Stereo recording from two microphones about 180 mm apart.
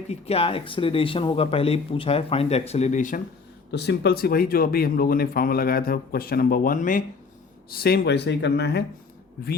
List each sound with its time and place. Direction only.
0.1 s speech: 35° left (ahead or behind)
3.7 s speech: 70° left (ahead or behind)